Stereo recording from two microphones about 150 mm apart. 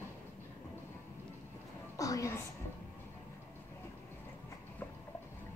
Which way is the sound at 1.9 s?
25° left (ahead or behind).